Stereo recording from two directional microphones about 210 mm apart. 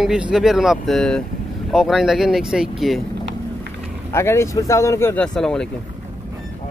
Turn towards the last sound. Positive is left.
turn(degrees=5)  # may be behind; listen again after turning